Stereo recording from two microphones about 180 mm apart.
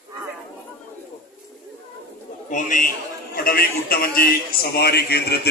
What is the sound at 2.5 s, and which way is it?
A man's voice, 45° left (ahead or behind).